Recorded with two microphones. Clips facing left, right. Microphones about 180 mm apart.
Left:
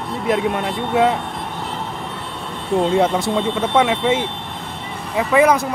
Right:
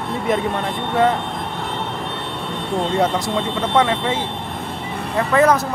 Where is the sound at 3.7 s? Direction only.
15° left (ahead or behind).